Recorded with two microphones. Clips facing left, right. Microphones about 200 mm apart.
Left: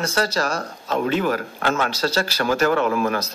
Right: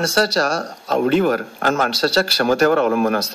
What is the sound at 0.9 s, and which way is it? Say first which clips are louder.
Speech: right 5 dB; 55° right (ahead or behind).